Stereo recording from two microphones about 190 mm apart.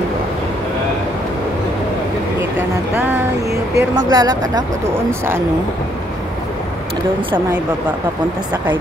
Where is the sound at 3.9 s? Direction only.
20° right (ahead or behind).